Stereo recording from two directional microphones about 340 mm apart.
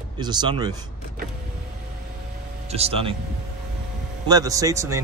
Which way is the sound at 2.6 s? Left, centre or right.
Centre.